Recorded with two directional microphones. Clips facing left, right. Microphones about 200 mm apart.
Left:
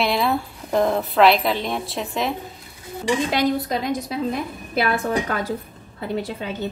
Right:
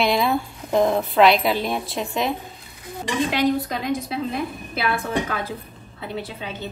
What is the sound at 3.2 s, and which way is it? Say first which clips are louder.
A woman's voice: even; 40° left (ahead or behind).